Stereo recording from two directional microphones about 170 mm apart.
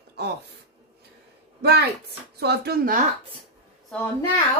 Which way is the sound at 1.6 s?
70° right (ahead or behind).